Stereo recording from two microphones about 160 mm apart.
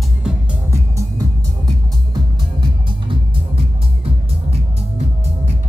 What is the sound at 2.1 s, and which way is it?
Music, 30° right (ahead or behind).